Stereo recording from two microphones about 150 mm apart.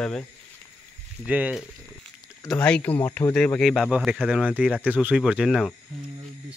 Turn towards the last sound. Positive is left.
turn(degrees=-5)  # may be behind; listen again after turning